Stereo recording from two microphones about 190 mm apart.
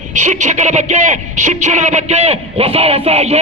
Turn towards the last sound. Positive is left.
turn(degrees=-35)  # may be behind; listen again after turning